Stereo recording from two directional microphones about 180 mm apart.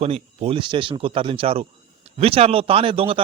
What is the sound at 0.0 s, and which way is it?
Speech, 35° right (ahead or behind).